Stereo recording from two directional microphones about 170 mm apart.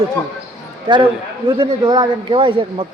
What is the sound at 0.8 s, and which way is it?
A man's voice, 30° right (ahead or behind).